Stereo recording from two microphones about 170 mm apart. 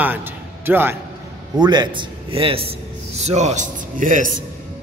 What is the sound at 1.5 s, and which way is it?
A man's voice, 25° right (ahead or behind).